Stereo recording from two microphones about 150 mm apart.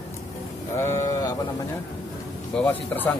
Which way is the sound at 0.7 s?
20° left (ahead or behind).